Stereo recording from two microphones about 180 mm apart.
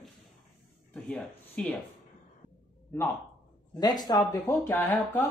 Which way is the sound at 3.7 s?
20° left (ahead or behind).